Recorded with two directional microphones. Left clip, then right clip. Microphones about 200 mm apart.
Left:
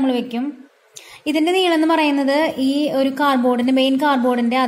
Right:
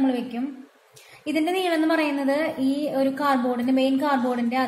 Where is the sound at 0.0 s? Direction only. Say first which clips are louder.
Left 5 dB; 50° left (ahead or behind).